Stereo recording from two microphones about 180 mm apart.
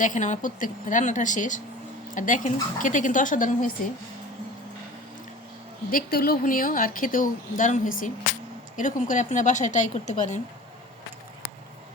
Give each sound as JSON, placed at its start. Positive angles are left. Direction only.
{"t": 0.0, "sound": "a woman's voice", "side_deg": 45}
{"t": 5.9, "sound": "a woman's voice", "side_deg": 55}